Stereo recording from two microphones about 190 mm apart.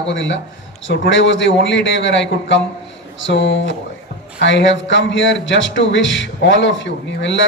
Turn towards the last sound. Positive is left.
turn(degrees=75)  # may be behind; listen again after turning